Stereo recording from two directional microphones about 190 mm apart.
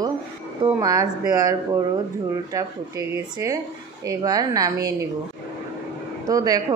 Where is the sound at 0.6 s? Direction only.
20° right (ahead or behind).